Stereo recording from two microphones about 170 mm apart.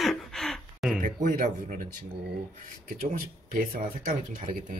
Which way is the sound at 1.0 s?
55° right (ahead or behind).